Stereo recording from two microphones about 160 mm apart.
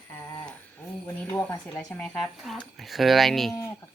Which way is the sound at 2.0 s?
Centre (ahead or behind).